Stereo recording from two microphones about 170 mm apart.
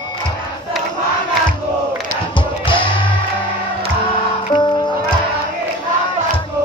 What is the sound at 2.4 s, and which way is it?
Music, 30° left (ahead or behind).